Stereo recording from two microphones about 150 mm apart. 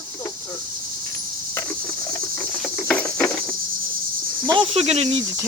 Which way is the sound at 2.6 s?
5° left (ahead or behind).